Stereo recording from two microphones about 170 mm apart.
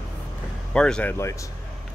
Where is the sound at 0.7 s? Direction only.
5° left (ahead or behind).